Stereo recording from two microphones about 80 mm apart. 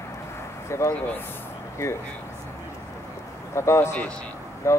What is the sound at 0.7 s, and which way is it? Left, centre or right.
Speech, left.